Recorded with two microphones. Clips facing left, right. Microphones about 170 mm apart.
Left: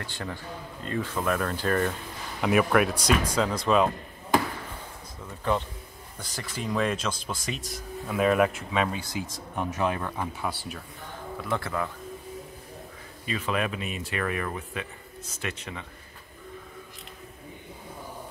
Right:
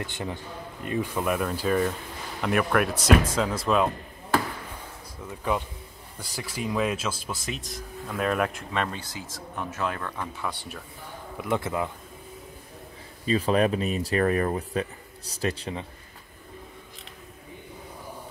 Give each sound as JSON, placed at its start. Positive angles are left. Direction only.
{"t": 0.0, "sound": "a man's voice", "side_deg": -20}
{"t": 6.1, "sound": "speech", "side_deg": -10}
{"t": 11.3, "sound": "speech", "side_deg": -15}
{"t": 13.2, "sound": "speech", "side_deg": -35}